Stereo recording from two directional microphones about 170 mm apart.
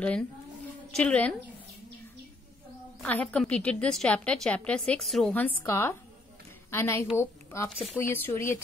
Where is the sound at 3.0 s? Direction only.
5° left (ahead or behind).